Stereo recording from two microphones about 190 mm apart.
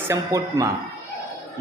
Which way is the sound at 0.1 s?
15° right (ahead or behind).